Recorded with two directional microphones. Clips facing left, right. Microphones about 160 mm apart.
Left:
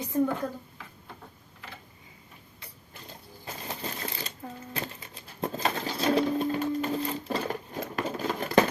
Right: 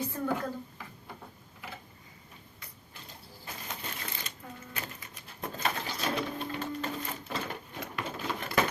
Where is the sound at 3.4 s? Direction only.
35° left (ahead or behind).